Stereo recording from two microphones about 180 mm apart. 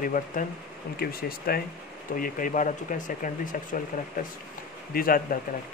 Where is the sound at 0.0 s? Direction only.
50° left (ahead or behind).